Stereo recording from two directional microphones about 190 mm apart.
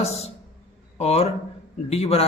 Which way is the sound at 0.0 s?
35° left (ahead or behind).